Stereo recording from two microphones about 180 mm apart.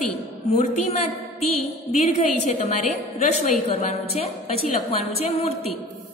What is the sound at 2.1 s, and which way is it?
A woman's voice, 40° left (ahead or behind).